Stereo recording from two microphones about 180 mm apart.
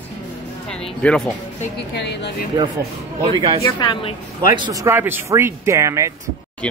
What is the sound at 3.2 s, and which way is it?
Speech, 25° right (ahead or behind).